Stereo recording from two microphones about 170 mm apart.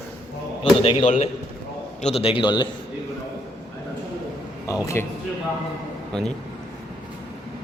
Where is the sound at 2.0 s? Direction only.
35° left (ahead or behind).